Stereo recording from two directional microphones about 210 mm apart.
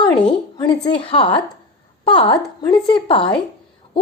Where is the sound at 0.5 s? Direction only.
20° left (ahead or behind).